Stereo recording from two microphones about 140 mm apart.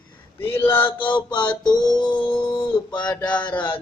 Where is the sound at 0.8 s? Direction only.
35° left (ahead or behind).